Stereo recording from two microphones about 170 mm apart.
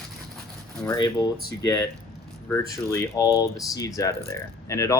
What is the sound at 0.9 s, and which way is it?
Speech, 25° left (ahead or behind).